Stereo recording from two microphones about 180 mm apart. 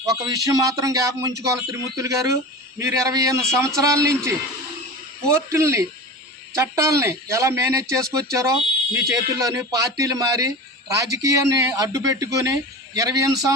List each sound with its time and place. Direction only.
0.0 s a man's voice: 20° right (ahead or behind)